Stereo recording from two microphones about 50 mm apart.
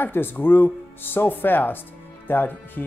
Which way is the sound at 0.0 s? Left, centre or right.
Left.